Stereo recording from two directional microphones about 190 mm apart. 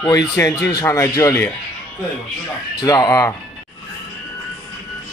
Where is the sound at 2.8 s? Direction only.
20° left (ahead or behind).